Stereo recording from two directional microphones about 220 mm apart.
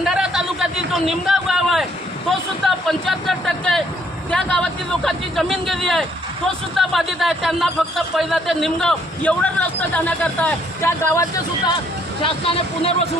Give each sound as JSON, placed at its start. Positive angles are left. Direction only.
{"t": 0.1, "sound": "a sound", "side_deg": -5}
{"t": 2.6, "sound": "speech", "side_deg": 0}
{"t": 12.2, "sound": "speech", "side_deg": 25}